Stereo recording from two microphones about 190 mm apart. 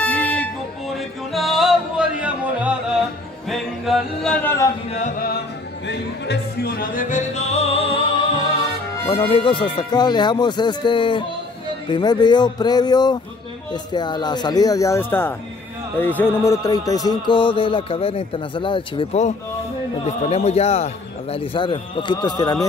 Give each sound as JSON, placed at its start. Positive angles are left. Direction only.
{"t": 0.0, "sound": "music", "side_deg": 5}
{"t": 4.9, "sound": "music", "side_deg": 40}
{"t": 5.9, "sound": "music", "side_deg": 60}
{"t": 9.3, "sound": "speech", "side_deg": 25}